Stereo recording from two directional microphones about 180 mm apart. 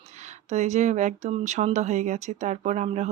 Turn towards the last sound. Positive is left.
turn(degrees=-40)  # may be behind; listen again after turning